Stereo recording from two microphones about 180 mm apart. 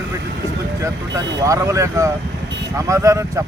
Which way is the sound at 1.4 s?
15° right (ahead or behind).